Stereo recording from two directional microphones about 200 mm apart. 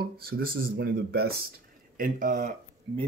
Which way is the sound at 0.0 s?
50° right (ahead or behind).